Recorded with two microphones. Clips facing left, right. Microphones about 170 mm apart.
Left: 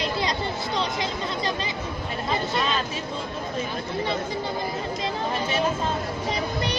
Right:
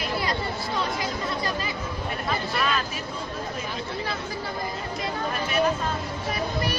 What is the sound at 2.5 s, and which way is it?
Vehicle, 25° left (ahead or behind).